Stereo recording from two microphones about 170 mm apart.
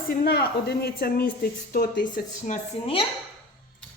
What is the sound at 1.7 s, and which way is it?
Speech, 55° left (ahead or behind).